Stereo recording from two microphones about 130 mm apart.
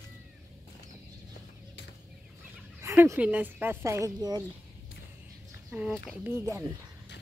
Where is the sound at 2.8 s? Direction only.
20° right (ahead or behind).